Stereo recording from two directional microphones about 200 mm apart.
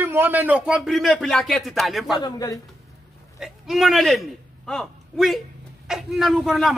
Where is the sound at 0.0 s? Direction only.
10° right (ahead or behind).